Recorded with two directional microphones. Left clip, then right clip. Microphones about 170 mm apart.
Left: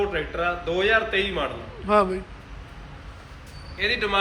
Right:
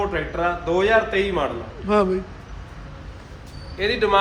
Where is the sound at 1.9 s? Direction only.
15° right (ahead or behind).